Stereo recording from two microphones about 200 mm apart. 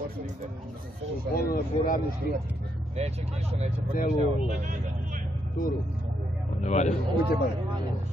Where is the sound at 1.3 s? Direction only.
45° left (ahead or behind).